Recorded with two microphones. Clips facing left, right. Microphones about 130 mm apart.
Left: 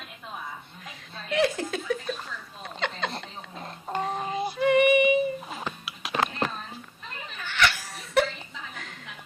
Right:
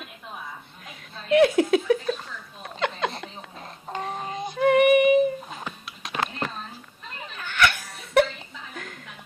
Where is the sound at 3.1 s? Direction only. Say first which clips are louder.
Even; centre (ahead or behind).